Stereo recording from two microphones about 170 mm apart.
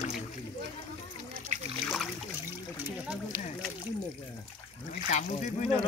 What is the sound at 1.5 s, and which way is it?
Splash, 45° right (ahead or behind).